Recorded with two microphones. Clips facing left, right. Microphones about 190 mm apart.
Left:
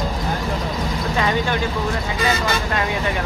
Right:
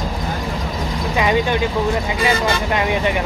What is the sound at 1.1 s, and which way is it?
Speech, 15° right (ahead or behind).